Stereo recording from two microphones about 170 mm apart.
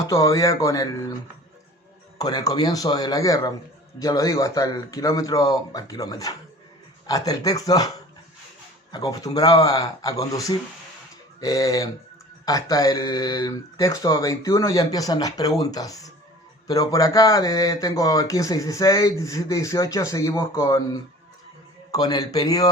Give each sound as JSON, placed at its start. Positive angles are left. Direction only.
{"t": 0.1, "sound": "speech", "side_deg": 20}
{"t": 2.1, "sound": "speech", "side_deg": 20}
{"t": 8.9, "sound": "speech", "side_deg": 20}